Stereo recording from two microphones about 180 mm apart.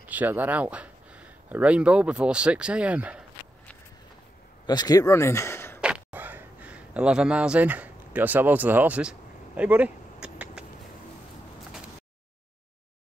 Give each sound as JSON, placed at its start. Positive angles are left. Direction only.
{"t": 0.0, "sound": "speech", "side_deg": -10}
{"t": 4.6, "sound": "speech", "side_deg": 20}
{"t": 5.8, "sound": "a sound", "side_deg": -5}